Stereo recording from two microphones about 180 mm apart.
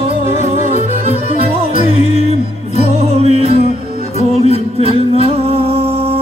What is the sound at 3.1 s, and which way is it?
Music, 35° right (ahead or behind).